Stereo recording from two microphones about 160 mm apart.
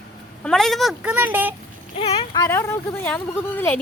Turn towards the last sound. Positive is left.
turn(degrees=15)  # may be behind; listen again after turning